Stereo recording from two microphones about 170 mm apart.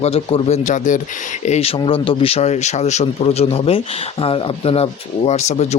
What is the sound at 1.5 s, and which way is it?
Speech, 35° left (ahead or behind).